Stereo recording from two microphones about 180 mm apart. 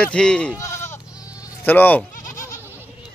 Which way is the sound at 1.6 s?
10° left (ahead or behind).